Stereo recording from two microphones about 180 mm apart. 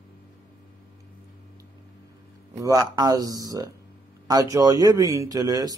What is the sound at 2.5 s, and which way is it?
Speech, 20° right (ahead or behind).